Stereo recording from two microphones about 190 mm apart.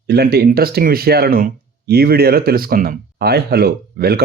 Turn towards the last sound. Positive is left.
turn(degrees=-55)  # may be behind; listen again after turning